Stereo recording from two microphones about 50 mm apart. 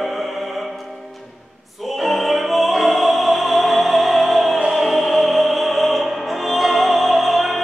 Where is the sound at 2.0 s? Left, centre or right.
Centre.